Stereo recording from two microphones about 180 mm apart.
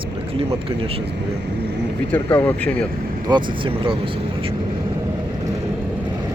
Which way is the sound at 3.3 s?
25° right (ahead or behind).